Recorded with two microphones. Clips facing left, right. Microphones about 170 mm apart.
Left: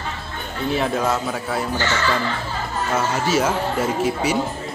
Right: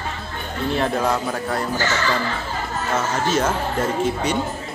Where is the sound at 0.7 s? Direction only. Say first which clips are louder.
Even; centre (ahead or behind).